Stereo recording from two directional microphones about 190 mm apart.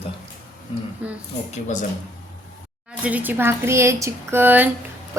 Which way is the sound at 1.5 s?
35° left (ahead or behind).